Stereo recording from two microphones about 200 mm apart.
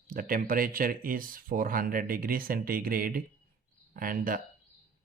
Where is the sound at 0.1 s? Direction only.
45° right (ahead or behind).